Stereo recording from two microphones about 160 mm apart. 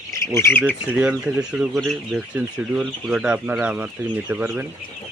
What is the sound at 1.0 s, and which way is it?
Speech, 5° right (ahead or behind).